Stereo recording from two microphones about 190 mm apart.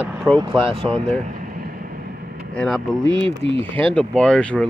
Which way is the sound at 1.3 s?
45° right (ahead or behind).